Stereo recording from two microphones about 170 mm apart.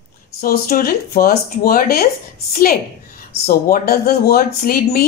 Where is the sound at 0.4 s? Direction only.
60° left (ahead or behind).